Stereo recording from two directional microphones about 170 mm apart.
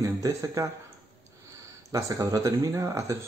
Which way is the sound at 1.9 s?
20° right (ahead or behind).